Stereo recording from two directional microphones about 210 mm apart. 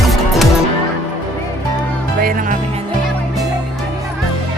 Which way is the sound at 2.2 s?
40° right (ahead or behind).